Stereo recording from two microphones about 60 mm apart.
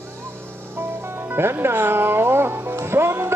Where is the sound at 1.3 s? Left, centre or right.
Right.